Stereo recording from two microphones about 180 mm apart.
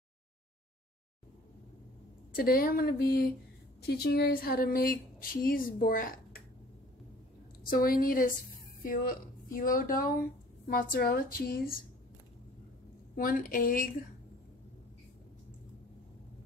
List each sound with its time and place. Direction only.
2.3 s speech: 55° left (ahead or behind)
7.6 s speech: 55° left (ahead or behind)
13.1 s speech: 50° left (ahead or behind)